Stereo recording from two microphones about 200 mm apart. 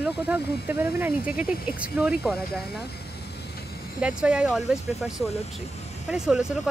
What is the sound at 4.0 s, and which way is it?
Speech, 5° right (ahead or behind).